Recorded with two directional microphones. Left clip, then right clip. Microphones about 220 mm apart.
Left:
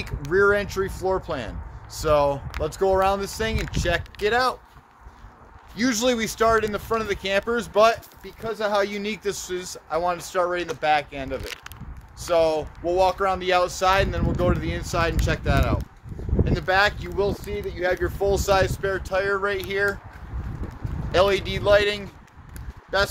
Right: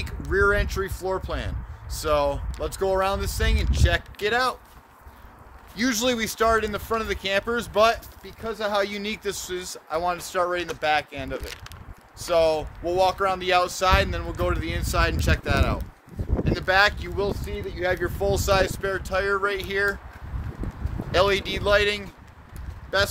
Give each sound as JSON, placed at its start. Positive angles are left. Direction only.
{"t": 0.3, "sound": "speech", "side_deg": 0}
{"t": 5.8, "sound": "speech", "side_deg": -10}
{"t": 17.2, "sound": "speech", "side_deg": -15}
{"t": 21.1, "sound": "speech", "side_deg": -20}